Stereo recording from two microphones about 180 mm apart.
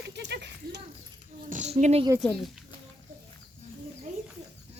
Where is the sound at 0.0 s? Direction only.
70° right (ahead or behind).